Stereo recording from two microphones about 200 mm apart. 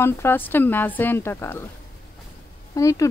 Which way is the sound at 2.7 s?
15° left (ahead or behind).